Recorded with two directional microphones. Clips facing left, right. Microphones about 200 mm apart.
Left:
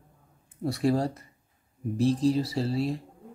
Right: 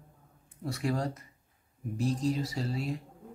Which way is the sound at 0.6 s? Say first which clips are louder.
Left 6 dB; 35° left (ahead or behind).